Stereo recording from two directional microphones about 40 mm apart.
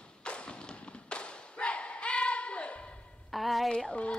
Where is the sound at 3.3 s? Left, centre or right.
Centre.